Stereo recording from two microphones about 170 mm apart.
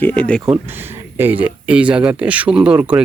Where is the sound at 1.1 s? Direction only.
10° right (ahead or behind).